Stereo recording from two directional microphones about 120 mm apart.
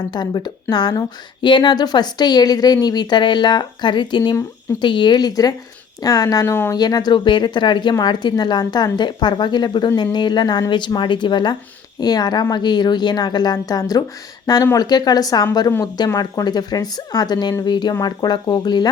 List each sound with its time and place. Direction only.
0.1 s speech: 35° left (ahead or behind); by 6.7 s 20° left (ahead or behind)
6.7 s speech: 35° left (ahead or behind)